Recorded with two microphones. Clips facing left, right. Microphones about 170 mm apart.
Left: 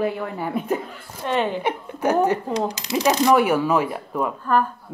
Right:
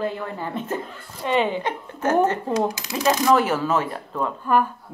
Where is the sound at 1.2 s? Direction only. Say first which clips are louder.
Right 1 dB; centre (ahead or behind).